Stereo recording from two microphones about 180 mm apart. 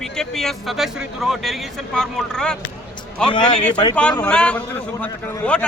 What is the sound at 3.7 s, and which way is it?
Speech, 25° left (ahead or behind).